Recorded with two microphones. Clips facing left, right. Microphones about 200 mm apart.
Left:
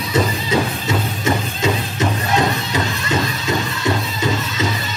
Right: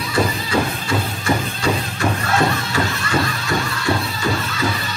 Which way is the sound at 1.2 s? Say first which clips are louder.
Left 1 dB; 20° left (ahead or behind).